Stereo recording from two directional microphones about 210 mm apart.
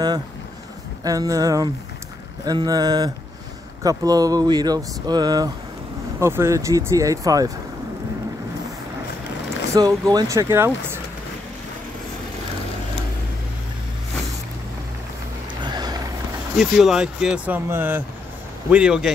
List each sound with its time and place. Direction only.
1.0 s speech: 15° right (ahead or behind)
9.8 s speech: 20° right (ahead or behind)
15.6 s a sound: 20° right (ahead or behind)
16.5 s speech: centre (ahead or behind)